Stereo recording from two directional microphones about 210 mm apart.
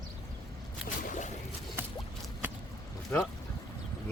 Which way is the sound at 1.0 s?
40° left (ahead or behind).